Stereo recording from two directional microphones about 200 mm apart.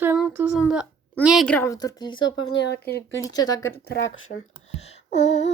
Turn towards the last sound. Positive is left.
turn(degrees=35)  # may be behind; listen again after turning